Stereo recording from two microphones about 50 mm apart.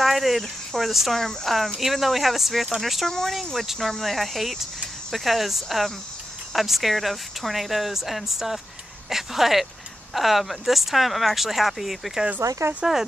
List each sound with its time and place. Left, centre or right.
0.0 s speech: centre
3.1 s speech: centre
12.4 s speech: right